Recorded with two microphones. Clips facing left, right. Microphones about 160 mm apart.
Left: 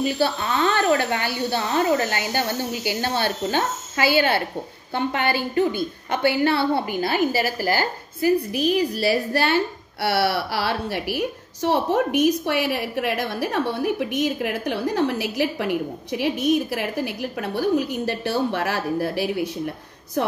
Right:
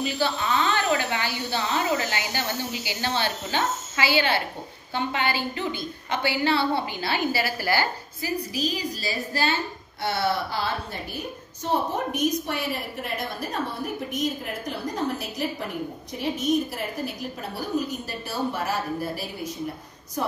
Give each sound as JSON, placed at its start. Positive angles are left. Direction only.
{"t": 0.2, "sound": "a woman's voice", "side_deg": 50}